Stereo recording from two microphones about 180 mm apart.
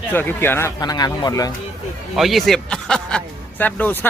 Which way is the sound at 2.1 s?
Centre (ahead or behind).